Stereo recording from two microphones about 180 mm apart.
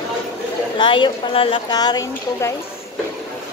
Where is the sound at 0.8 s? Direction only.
25° left (ahead or behind).